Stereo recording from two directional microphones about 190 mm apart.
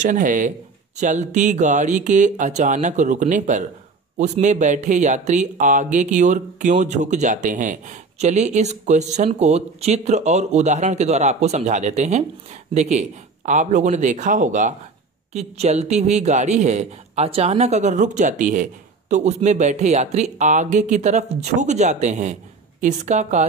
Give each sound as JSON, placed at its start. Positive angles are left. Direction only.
{"t": 0.0, "sound": "speech", "side_deg": -45}